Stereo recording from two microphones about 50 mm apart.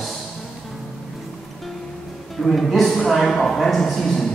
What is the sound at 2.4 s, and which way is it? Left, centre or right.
A woman's voice, centre.